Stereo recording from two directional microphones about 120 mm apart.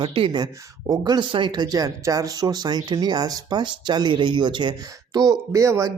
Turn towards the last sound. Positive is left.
turn(degrees=-25)  # may be behind; listen again after turning